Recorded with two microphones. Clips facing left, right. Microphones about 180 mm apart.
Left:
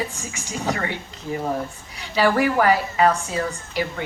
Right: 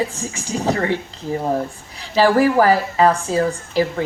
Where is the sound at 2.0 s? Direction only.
35° right (ahead or behind).